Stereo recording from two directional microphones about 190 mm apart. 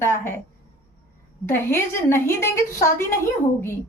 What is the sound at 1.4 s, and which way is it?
A woman's voice, 10° left (ahead or behind).